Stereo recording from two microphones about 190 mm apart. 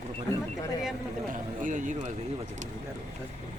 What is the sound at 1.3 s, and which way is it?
Speech, 40° right (ahead or behind).